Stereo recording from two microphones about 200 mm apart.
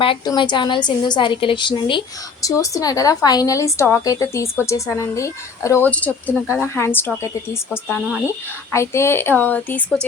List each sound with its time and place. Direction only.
0.0 s a woman's voice: 25° left (ahead or behind); by 10.1 s 10° left (ahead or behind)